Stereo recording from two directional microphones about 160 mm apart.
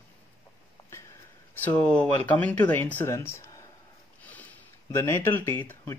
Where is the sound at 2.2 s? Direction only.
10° left (ahead or behind).